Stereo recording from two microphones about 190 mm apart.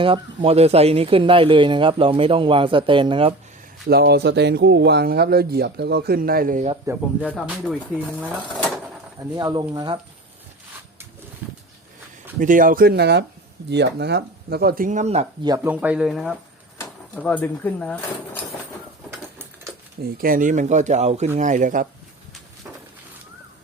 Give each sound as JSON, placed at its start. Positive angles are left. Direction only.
{"t": 0.0, "sound": "speech", "side_deg": -30}
{"t": 3.8, "sound": "a man's voice", "side_deg": -60}
{"t": 6.8, "sound": "speech", "side_deg": -10}
{"t": 9.3, "sound": "speech", "side_deg": -20}
{"t": 11.4, "sound": "a sound", "side_deg": -10}
{"t": 12.4, "sound": "speech", "side_deg": -45}
{"t": 15.4, "sound": "speech", "side_deg": -15}
{"t": 20.0, "sound": "speech", "side_deg": -50}